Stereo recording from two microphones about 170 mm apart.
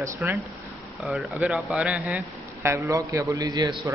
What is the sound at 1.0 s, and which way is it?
Speech, centre (ahead or behind).